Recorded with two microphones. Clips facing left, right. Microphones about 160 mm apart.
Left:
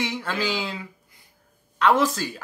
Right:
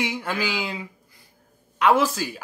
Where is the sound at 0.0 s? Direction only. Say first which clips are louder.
Even; 10° right (ahead or behind).